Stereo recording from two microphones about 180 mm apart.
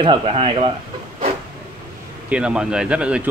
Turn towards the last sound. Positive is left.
turn(degrees=-5)  # may be behind; listen again after turning